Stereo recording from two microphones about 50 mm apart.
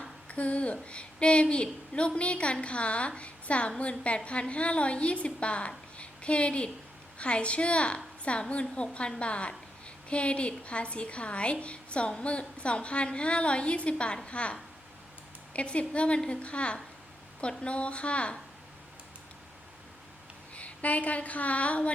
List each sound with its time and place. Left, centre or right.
0.3 s a woman's voice: left
20.6 s speech: left